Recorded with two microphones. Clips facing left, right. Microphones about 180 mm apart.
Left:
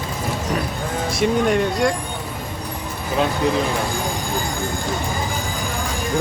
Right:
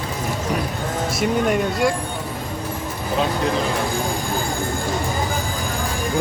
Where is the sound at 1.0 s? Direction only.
5° right (ahead or behind).